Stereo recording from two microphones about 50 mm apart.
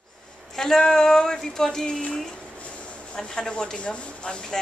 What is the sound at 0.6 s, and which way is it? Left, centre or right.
Speech, centre.